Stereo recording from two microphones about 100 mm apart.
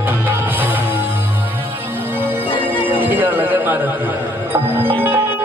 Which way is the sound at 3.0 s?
20° right (ahead or behind).